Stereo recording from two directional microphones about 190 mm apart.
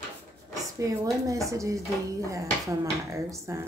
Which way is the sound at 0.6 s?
15° right (ahead or behind).